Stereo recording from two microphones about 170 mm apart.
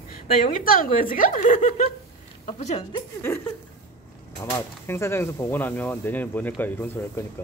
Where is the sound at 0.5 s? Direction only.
55° left (ahead or behind).